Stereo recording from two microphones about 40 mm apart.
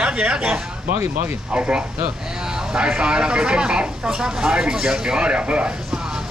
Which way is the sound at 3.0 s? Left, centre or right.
Right.